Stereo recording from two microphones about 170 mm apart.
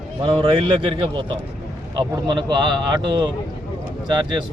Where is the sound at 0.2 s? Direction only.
35° right (ahead or behind).